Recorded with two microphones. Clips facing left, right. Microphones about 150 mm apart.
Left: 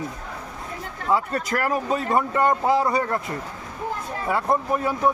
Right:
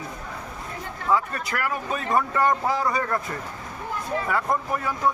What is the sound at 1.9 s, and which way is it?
A man's voice, 25° left (ahead or behind).